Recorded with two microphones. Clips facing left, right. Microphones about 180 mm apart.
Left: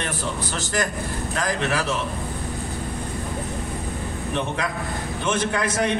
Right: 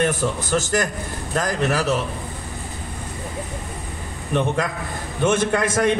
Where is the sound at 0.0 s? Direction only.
45° right (ahead or behind).